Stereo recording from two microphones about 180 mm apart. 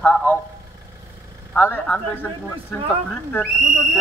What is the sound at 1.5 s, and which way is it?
Speech, 10° left (ahead or behind).